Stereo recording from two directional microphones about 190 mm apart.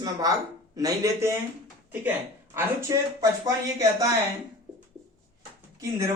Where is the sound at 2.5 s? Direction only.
15° right (ahead or behind).